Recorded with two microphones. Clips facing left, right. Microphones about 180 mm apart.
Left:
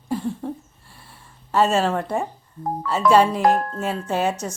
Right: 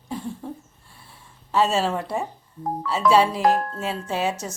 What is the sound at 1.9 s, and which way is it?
Speech, 45° left (ahead or behind).